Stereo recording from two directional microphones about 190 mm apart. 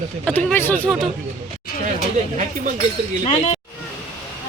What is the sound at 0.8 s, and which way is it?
Speech, centre (ahead or behind).